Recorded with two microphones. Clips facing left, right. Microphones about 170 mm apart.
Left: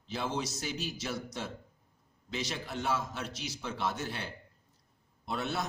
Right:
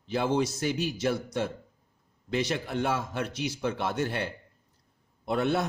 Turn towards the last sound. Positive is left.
turn(degrees=-55)  # may be behind; listen again after turning